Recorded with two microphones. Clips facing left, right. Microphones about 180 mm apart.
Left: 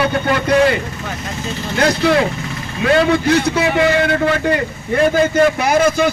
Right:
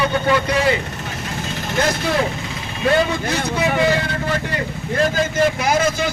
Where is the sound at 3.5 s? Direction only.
65° left (ahead or behind).